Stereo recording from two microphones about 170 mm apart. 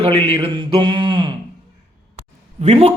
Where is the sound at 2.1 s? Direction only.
40° right (ahead or behind).